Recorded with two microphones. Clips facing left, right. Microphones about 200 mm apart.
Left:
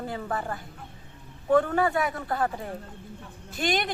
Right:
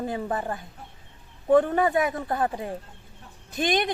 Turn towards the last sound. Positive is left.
turn(degrees=-20)  # may be behind; listen again after turning